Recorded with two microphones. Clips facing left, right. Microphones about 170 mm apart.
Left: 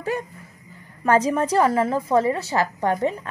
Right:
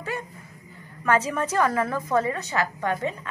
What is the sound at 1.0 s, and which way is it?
A woman's voice, 35° left (ahead or behind).